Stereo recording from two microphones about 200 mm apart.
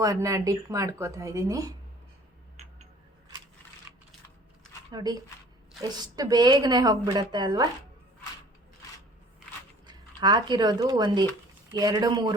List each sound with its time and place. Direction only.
0.0 s speech: 15° right (ahead or behind)
3.9 s a sound: 10° right (ahead or behind)
4.9 s a woman's voice: 20° right (ahead or behind)
9.8 s a woman's voice: 20° right (ahead or behind)